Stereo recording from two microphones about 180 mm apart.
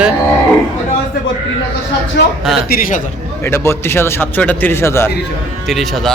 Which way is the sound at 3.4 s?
15° left (ahead or behind).